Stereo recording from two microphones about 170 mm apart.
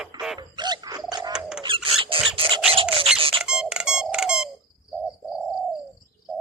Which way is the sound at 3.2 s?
35° right (ahead or behind).